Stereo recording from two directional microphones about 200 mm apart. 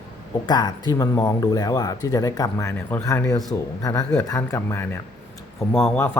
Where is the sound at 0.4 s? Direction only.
20° left (ahead or behind).